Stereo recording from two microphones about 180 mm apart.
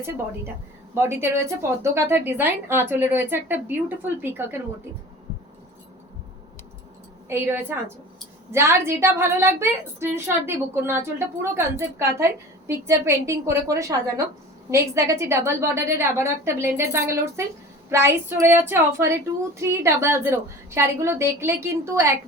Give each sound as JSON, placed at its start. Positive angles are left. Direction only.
{"t": 0.9, "sound": "a woman's voice", "side_deg": -15}
{"t": 7.3, "sound": "a woman's voice", "side_deg": -15}